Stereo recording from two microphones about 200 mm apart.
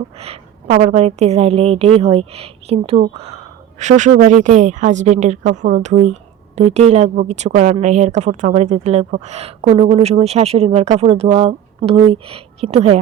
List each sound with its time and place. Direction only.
0.2 s a woman's voice: 30° right (ahead or behind)